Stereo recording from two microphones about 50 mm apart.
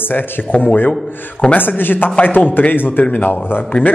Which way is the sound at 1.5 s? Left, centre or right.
Left.